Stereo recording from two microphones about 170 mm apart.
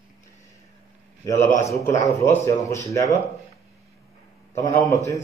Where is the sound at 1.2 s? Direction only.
20° left (ahead or behind).